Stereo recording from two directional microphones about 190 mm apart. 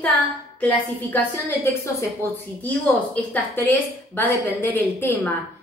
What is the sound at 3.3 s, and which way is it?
A woman's voice, 10° left (ahead or behind).